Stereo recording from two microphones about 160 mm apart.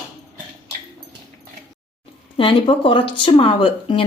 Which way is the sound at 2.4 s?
35° left (ahead or behind).